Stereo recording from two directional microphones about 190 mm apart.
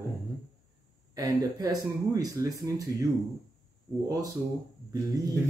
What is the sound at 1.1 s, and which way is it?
Speech, 20° right (ahead or behind).